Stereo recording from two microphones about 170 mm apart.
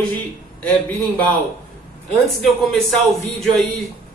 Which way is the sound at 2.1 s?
Centre (ahead or behind).